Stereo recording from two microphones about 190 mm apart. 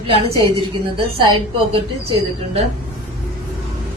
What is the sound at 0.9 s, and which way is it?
Speech, 25° right (ahead or behind).